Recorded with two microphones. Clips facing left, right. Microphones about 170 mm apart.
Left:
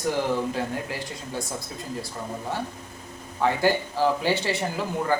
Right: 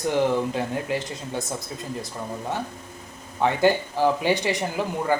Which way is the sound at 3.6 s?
15° right (ahead or behind).